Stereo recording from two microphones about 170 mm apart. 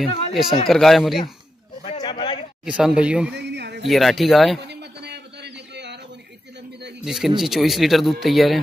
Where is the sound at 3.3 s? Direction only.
80° right.